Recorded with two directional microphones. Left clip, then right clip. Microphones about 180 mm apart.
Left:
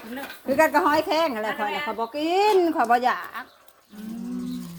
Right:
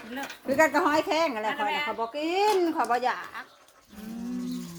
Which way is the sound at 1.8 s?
50° left (ahead or behind).